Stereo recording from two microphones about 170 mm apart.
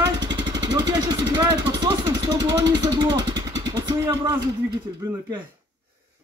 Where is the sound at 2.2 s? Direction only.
20° right (ahead or behind).